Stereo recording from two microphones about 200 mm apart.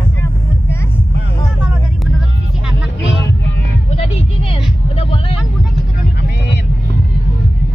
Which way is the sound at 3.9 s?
30° left (ahead or behind).